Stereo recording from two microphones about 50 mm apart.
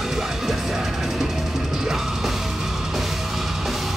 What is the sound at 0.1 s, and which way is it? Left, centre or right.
Music, centre.